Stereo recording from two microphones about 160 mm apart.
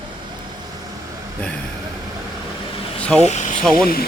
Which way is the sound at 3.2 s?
45° left (ahead or behind).